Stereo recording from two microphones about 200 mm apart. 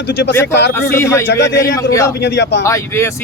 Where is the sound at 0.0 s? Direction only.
60° left (ahead or behind).